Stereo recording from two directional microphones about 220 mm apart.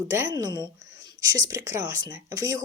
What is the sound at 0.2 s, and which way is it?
A woman's voice, 15° right (ahead or behind).